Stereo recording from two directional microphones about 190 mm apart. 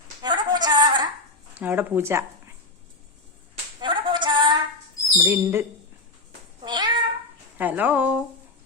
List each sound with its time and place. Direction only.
0.2 s a sound: 20° right (ahead or behind)
1.5 s a woman's voice: 10° right (ahead or behind)
3.8 s a sound: 25° right (ahead or behind)
5.1 s a woman's voice: 10° right (ahead or behind)
6.6 s cat: 25° right (ahead or behind)
7.6 s a woman's voice: 10° right (ahead or behind)